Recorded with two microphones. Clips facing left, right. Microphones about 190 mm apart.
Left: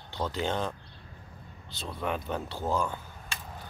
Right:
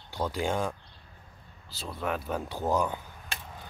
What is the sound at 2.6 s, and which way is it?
Speech, 15° right (ahead or behind).